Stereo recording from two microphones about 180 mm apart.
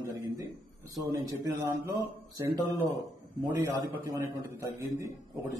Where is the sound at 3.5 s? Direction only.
15° right (ahead or behind).